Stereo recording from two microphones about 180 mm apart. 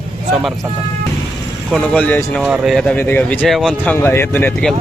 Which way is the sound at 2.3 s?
5° right (ahead or behind).